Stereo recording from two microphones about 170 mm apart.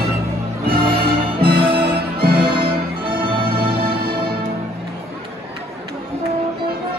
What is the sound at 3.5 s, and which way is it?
Music, 60° right (ahead or behind).